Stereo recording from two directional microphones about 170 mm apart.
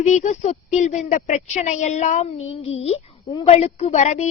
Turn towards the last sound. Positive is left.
turn(degrees=40)  # may be behind; listen again after turning